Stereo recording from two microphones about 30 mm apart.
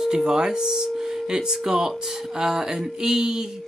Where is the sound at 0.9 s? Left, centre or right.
Centre.